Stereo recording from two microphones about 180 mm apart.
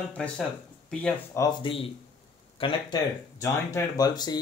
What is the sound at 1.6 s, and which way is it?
Speech, 30° left (ahead or behind).